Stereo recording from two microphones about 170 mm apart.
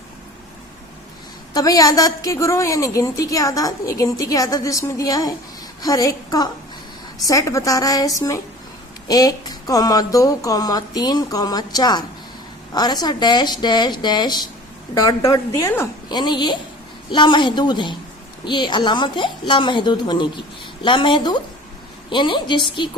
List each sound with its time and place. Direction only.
1.5 s a woman's voice: 20° left (ahead or behind)